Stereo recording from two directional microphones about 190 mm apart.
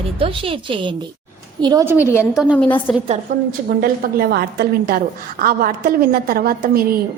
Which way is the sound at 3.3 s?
45° right (ahead or behind).